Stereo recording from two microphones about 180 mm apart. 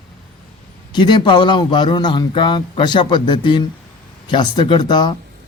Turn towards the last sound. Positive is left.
turn(degrees=25)  # may be behind; listen again after turning